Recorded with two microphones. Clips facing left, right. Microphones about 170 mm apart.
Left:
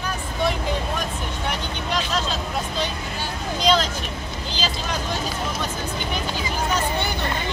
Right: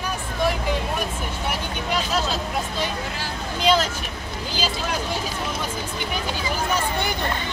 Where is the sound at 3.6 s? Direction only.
10° right (ahead or behind).